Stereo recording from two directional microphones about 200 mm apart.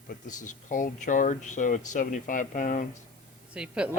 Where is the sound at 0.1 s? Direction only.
40° left (ahead or behind).